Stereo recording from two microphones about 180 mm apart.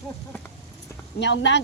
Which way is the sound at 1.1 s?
80° left.